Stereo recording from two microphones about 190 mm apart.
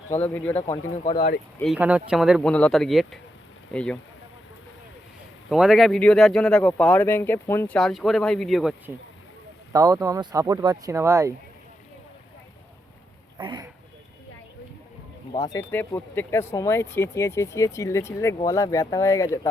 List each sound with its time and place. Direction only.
0.1 s speech: 10° left (ahead or behind)
1.0 s speech: 50° left (ahead or behind)
1.7 s speech: 5° right (ahead or behind)
5.5 s speech: centre (ahead or behind)
7.8 s speech: centre (ahead or behind)
9.7 s speech: 15° right (ahead or behind)
13.4 s speech: 25° right (ahead or behind)
15.3 s speech: 20° left (ahead or behind)